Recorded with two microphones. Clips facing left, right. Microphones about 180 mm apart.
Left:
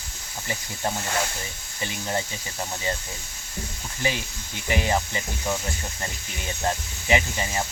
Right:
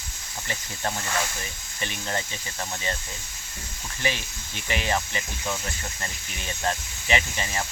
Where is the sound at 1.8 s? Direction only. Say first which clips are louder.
Left 2 dB; 15° left (ahead or behind).